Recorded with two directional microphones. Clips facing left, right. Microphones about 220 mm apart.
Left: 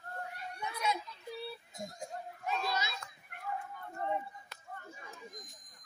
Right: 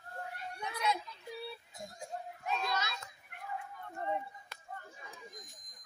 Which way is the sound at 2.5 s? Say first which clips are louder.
Even; 5° left (ahead or behind).